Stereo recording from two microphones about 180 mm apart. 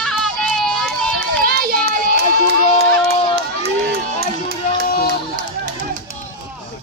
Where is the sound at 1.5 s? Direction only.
60° right (ahead or behind).